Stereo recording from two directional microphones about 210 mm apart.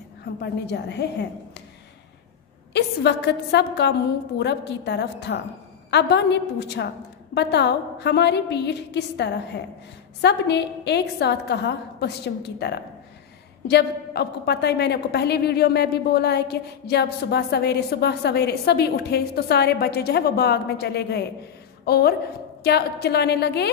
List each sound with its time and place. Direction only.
0.2 s a woman's voice: 50° left (ahead or behind)
2.7 s a woman's voice: 55° left (ahead or behind)